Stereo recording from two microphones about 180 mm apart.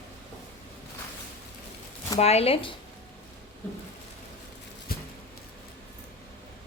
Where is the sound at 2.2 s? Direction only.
35° left (ahead or behind).